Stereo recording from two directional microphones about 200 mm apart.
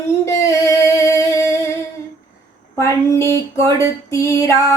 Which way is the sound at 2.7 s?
15° left (ahead or behind).